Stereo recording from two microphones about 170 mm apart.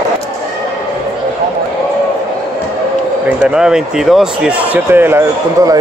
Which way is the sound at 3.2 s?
5° right (ahead or behind).